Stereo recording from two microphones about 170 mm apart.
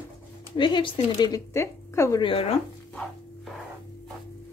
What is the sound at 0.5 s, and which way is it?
Speech, 25° left (ahead or behind).